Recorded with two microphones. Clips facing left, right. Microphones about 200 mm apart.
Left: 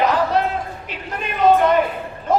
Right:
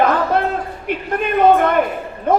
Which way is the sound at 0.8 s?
55° right (ahead or behind).